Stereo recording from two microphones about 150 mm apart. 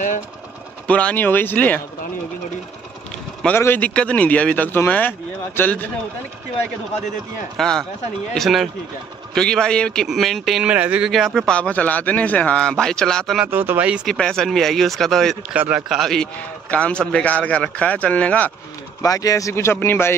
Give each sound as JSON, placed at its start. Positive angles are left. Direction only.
{"t": 0.8, "sound": "a man's voice", "side_deg": 10}
{"t": 3.4, "sound": "a man's voice", "side_deg": 15}
{"t": 7.5, "sound": "a man's voice", "side_deg": 5}
{"t": 13.5, "sound": "speech", "side_deg": -15}
{"t": 14.0, "sound": "a man's voice", "side_deg": 5}
{"t": 15.5, "sound": "speech", "side_deg": -10}
{"t": 16.0, "sound": "a man's voice", "side_deg": 5}
{"t": 19.0, "sound": "a man's voice", "side_deg": 25}